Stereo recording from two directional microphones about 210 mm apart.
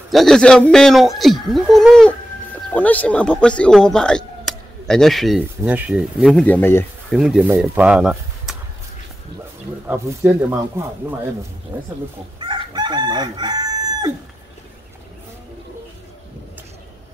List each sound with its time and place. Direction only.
0.1 s speech: centre (ahead or behind)
4.5 s a sound: centre (ahead or behind)
5.6 s speech: 5° right (ahead or behind); by 7.2 s 10° left (ahead or behind)
7.2 s speech: 5° right (ahead or behind)
9.8 s speech: 10° right (ahead or behind)
12.4 s chicken: 20° right (ahead or behind)